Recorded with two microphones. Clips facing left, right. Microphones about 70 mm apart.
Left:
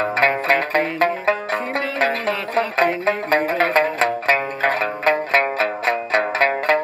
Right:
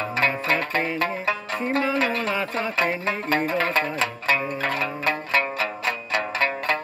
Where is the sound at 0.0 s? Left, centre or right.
Left.